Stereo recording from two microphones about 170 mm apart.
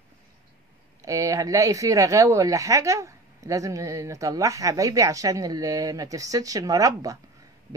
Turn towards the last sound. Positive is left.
turn(degrees=-20)  # may be behind; listen again after turning